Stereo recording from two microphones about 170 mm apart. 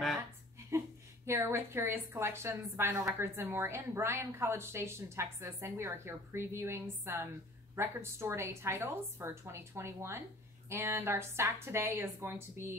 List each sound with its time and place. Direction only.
0.7 s a woman's voice: 15° right (ahead or behind)